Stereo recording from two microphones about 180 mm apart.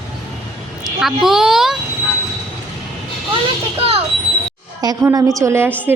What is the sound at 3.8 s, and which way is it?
Speech, 30° right (ahead or behind).